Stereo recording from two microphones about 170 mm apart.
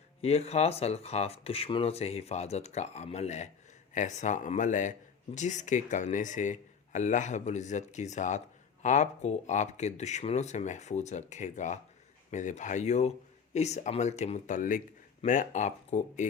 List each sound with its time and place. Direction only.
0.2 s speech: 40° left (ahead or behind)